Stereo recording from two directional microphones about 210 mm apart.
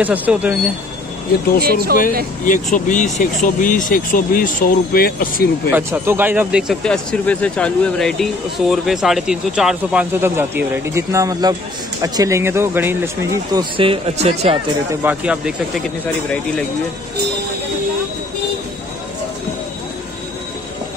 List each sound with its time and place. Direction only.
0.0 s speech: 5° right (ahead or behind)
1.6 s speech: 45° right (ahead or behind)
2.4 s speech: 40° left (ahead or behind)
5.7 s speech: 10° right (ahead or behind); by 14.6 s 30° right (ahead or behind)
14.9 s speech: 5° right (ahead or behind)